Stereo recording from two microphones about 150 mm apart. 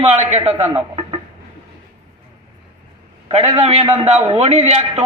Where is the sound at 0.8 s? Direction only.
35° right (ahead or behind).